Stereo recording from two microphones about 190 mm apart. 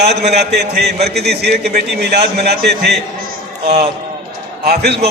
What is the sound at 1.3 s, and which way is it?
Speech, 60° right (ahead or behind).